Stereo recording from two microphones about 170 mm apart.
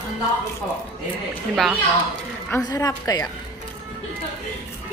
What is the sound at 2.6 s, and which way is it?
Speech, 20° left (ahead or behind).